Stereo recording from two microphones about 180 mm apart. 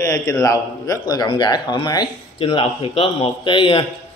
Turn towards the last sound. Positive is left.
turn(degrees=30)  # may be behind; listen again after turning